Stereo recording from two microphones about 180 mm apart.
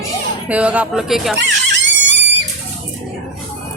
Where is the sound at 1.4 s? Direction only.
85° right.